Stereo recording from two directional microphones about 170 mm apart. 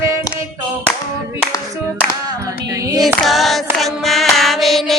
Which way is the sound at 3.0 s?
Centre (ahead or behind).